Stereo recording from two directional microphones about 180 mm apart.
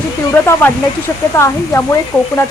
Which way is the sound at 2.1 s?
5° left (ahead or behind).